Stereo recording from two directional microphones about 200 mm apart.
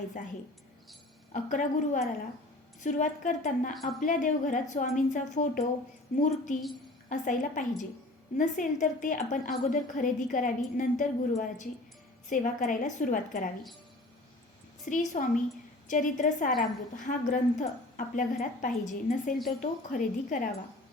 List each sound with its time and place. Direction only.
0.2 s a woman's voice: 40° left (ahead or behind)
12.3 s a woman's voice: 40° left (ahead or behind)
14.8 s a woman's voice: 40° left (ahead or behind)